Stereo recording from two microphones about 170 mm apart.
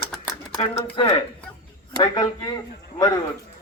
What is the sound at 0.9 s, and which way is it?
A man's voice, 30° left (ahead or behind).